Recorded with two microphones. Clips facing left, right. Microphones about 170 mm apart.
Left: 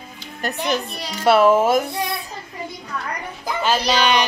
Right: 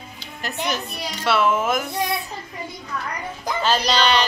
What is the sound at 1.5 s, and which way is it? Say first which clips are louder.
Speech: left 6 dB; 30° left (ahead or behind).